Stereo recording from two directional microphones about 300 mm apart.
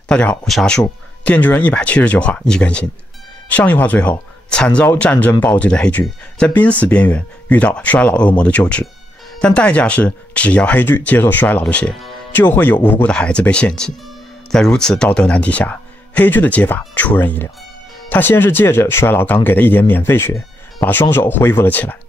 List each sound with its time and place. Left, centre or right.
0.1 s speech: centre